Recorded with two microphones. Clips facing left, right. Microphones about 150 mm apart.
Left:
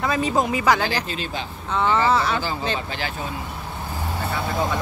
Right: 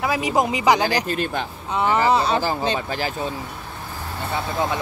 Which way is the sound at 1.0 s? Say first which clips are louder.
Right 5 dB; 55° right (ahead or behind).